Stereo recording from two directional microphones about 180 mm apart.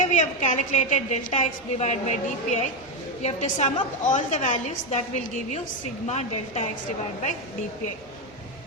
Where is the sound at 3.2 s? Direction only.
40° left (ahead or behind).